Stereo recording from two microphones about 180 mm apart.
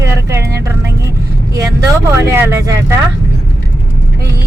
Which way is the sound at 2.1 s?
15° right (ahead or behind).